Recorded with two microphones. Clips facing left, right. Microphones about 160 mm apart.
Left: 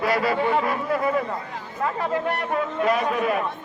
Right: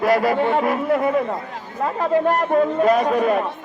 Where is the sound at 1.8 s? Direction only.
40° right (ahead or behind).